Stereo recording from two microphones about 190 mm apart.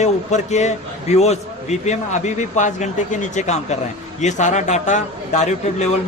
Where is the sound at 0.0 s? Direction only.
40° left (ahead or behind).